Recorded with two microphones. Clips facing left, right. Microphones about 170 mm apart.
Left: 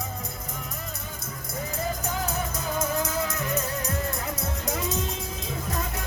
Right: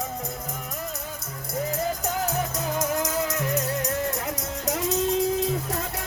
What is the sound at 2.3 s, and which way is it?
Music, 80° right.